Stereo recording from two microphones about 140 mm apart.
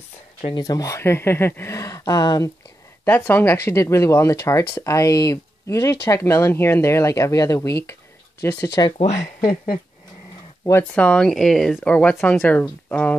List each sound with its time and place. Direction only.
0.6 s speech: 25° left (ahead or behind)
3.1 s speech: 15° left (ahead or behind)
8.9 s speech: 50° left (ahead or behind)
10.6 s speech: 15° left (ahead or behind)